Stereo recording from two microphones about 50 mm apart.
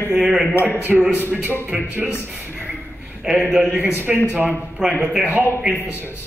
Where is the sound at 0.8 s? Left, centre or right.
Right.